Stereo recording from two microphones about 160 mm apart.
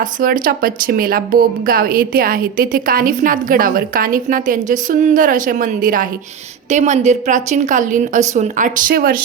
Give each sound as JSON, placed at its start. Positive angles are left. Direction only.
{"t": 0.0, "sound": "speech", "side_deg": -60}
{"t": 6.7, "sound": "a woman's voice", "side_deg": -45}